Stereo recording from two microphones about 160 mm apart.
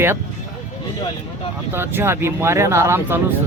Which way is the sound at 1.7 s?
15° right (ahead or behind).